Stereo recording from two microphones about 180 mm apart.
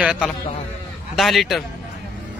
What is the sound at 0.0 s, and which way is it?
A man's voice, 5° right (ahead or behind).